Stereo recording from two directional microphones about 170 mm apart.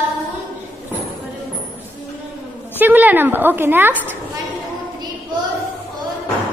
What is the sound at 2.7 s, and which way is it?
A woman's voice, 10° right (ahead or behind).